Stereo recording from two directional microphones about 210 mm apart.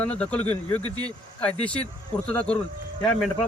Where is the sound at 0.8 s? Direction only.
20° right (ahead or behind).